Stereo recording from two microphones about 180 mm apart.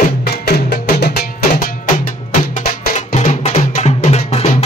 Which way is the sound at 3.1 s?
40° left (ahead or behind).